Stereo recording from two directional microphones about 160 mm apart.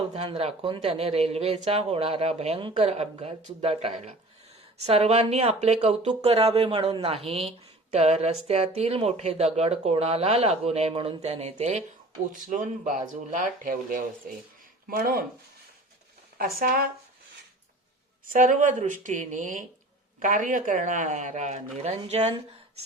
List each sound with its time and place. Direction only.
0.1 s speech: 40° right (ahead or behind)
12.3 s speech: 55° right (ahead or behind)
14.8 s speech: 65° right (ahead or behind)
16.4 s speech: 65° right (ahead or behind)
18.3 s speech: 50° right (ahead or behind)